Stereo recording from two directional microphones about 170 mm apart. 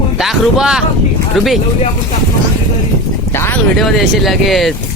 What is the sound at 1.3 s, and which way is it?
Speech, centre (ahead or behind).